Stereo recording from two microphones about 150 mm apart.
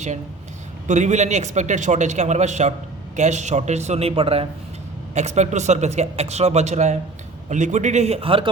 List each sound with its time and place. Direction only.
0.9 s a man's voice: 50° right (ahead or behind)
5.1 s a man's voice: 50° right (ahead or behind)